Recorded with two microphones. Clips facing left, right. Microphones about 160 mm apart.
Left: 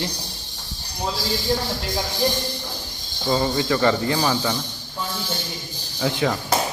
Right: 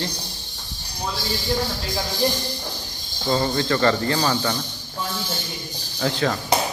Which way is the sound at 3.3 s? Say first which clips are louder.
Even; 10° left (ahead or behind).